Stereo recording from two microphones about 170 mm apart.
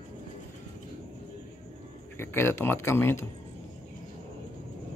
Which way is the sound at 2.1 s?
15° left (ahead or behind).